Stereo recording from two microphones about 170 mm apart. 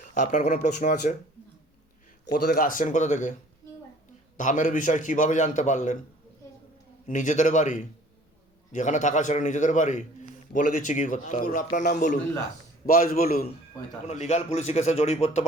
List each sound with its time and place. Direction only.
0.0 s a man's voice: 50° left (ahead or behind)
2.5 s a man's voice: 55° left (ahead or behind)
4.4 s a man's voice: 50° left (ahead or behind)
7.1 s a man's voice: 45° left (ahead or behind)
12.8 s a man's voice: 60° left (ahead or behind)
14.1 s a man's voice: 40° left (ahead or behind)